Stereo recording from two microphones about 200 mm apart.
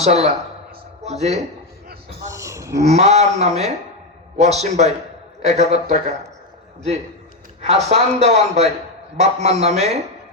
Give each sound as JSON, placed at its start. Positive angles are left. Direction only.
{"t": 0.0, "sound": "a man's voice", "side_deg": -30}
{"t": 2.2, "sound": "a sound", "side_deg": -15}
{"t": 2.8, "sound": "a man's voice", "side_deg": -35}
{"t": 7.6, "sound": "a man's voice", "side_deg": -30}